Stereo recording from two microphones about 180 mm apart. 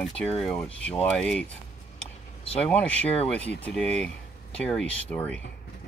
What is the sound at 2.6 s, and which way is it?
Speech, 5° left (ahead or behind).